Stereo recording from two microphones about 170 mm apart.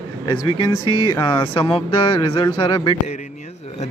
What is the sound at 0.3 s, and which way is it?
Speech, 30° left (ahead or behind).